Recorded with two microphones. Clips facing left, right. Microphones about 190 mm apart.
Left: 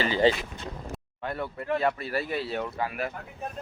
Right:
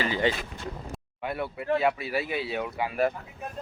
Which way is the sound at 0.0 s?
30° left (ahead or behind).